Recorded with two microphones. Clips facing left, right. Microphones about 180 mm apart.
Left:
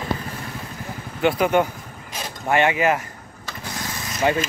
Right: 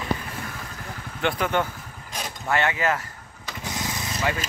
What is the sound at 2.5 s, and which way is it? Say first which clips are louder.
Speech: left 5 dB; 20° left (ahead or behind).